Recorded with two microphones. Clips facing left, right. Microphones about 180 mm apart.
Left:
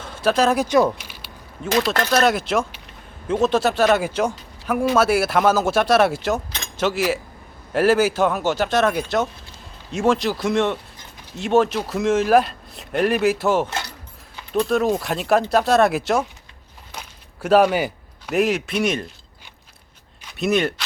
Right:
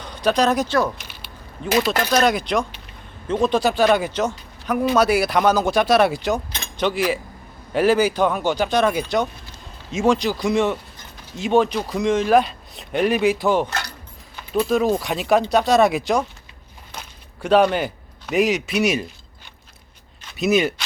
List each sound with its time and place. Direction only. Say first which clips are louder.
0.0 s speech: even; 5° left (ahead or behind)
13.7 s a sound: even; 25° left (ahead or behind)
14.5 s speech: right 1 dB; 5° right (ahead or behind)
17.4 s a man's voice: left 1 dB; 5° left (ahead or behind)
20.3 s speech: right 1 dB; 5° right (ahead or behind)